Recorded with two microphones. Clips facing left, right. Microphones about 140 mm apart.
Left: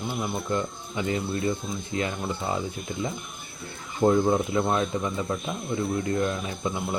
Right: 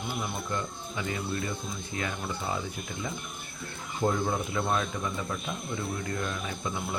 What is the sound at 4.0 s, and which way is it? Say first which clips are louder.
Speech: left 7 dB; 25° left (ahead or behind).